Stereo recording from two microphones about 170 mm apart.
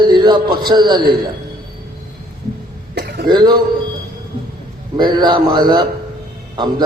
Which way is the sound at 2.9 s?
75° right (ahead or behind).